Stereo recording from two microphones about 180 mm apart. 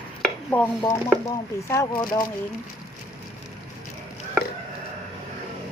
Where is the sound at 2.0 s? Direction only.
25° left (ahead or behind).